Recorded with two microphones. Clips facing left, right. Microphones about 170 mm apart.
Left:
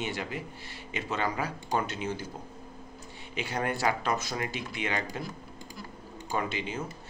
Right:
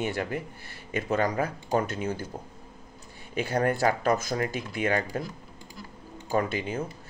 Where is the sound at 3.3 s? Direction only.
50° right (ahead or behind).